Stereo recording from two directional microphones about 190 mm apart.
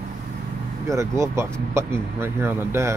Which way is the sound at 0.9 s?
15° right (ahead or behind).